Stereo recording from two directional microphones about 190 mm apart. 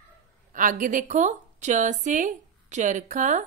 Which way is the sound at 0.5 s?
45° right (ahead or behind).